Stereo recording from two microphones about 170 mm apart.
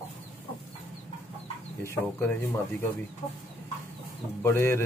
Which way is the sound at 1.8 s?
15° left (ahead or behind).